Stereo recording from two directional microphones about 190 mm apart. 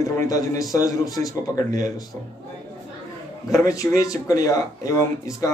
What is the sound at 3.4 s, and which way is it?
Speech, 15° left (ahead or behind).